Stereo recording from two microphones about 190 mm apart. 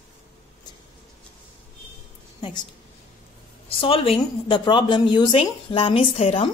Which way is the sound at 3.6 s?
30° left (ahead or behind).